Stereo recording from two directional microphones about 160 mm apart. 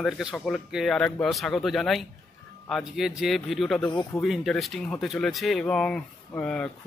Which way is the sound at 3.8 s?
25° left (ahead or behind).